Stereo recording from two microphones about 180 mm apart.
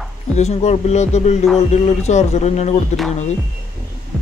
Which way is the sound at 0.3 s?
35° left (ahead or behind).